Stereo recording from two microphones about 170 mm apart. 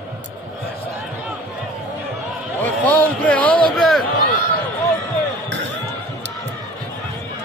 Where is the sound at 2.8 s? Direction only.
10° left (ahead or behind).